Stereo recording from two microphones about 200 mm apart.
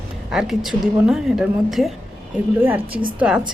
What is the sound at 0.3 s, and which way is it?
A woman's voice, centre (ahead or behind).